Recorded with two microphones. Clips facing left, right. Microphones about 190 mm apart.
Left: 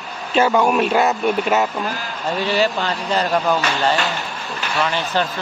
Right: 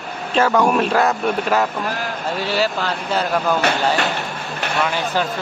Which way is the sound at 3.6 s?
65° right (ahead or behind).